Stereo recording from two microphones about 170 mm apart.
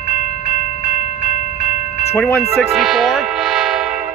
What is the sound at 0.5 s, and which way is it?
Train, 50° left (ahead or behind).